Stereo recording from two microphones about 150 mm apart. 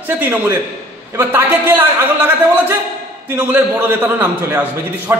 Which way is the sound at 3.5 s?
15° right (ahead or behind).